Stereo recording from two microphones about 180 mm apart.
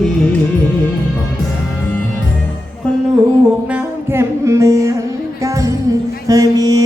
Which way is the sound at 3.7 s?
10° right (ahead or behind).